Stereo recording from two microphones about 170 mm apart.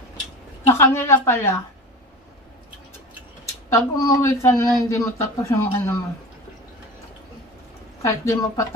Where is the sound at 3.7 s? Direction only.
15° left (ahead or behind).